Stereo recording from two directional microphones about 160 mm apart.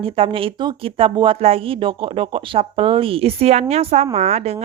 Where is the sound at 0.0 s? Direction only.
35° right (ahead or behind).